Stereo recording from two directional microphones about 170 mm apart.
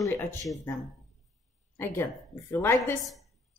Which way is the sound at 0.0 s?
10° left (ahead or behind).